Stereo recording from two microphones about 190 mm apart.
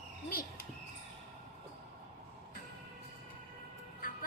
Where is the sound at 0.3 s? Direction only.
50° left (ahead or behind).